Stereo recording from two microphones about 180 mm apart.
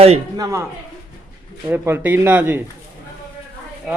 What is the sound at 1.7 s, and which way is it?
Speech, 10° right (ahead or behind).